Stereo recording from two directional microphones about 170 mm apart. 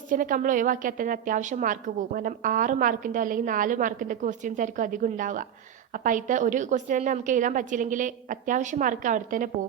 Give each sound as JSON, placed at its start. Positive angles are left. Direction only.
{"t": 0.1, "sound": "a woman's voice", "side_deg": -50}